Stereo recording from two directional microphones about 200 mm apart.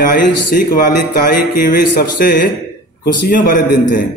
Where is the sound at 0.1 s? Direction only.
50° left (ahead or behind).